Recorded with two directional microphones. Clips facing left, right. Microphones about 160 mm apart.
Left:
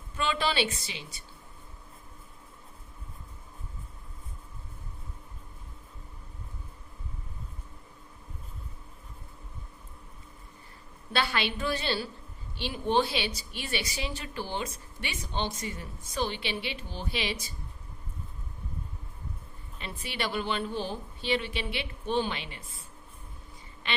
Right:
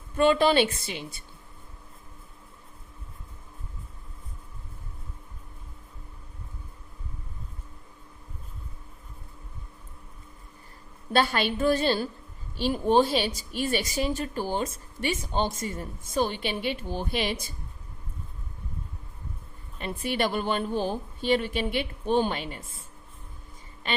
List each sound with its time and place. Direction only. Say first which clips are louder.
0.2 s a woman's voice: right 8 dB; 50° right (ahead or behind)
11.1 s a woman's voice: right 5 dB; 45° right (ahead or behind)
19.8 s a woman's voice: right 7 dB; 50° right (ahead or behind)
23.9 s a sound: right 4 dB; 45° right (ahead or behind)